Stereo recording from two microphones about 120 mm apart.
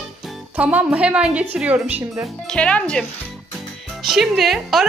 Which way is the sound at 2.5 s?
10° left (ahead or behind).